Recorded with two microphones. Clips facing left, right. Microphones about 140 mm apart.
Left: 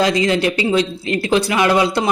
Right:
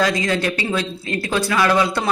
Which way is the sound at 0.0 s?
20° left (ahead or behind).